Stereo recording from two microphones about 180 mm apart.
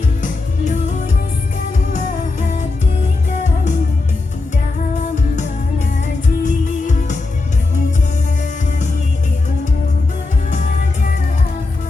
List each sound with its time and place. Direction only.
0.2 s music: 40° left (ahead or behind)
6.4 s music: 45° left (ahead or behind)